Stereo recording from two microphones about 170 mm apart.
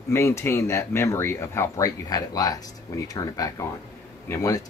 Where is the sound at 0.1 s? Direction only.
15° left (ahead or behind).